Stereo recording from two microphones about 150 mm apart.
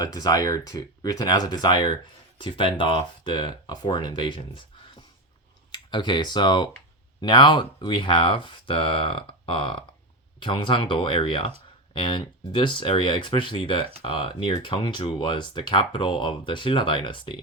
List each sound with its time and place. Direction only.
0.0 s speech: 25° left (ahead or behind)